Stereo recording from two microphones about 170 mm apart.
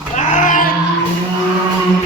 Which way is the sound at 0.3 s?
50° left (ahead or behind).